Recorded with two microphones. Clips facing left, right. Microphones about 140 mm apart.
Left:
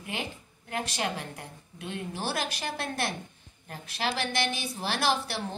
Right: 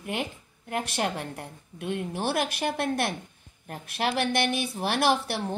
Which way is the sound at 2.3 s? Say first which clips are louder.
Right 6 dB; 55° right (ahead or behind).